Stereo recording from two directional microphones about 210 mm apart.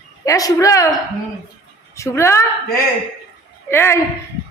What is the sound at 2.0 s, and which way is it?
Speech, 15° left (ahead or behind).